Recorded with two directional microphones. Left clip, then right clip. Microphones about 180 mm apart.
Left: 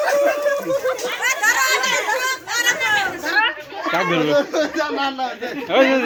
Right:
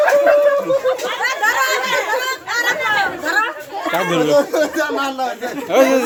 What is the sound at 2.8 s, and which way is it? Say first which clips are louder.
Chatter: right 2 dB; 30° right (ahead or behind).